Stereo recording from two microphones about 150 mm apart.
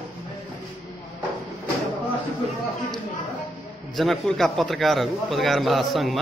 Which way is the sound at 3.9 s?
Centre (ahead or behind).